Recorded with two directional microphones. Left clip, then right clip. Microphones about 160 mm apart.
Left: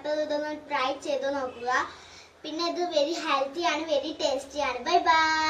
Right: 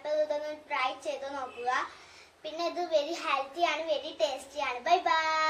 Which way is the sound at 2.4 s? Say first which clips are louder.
Left 4 dB; 25° right (ahead or behind).